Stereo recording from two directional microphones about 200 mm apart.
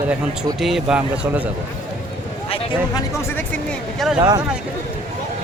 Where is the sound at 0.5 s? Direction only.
Centre (ahead or behind).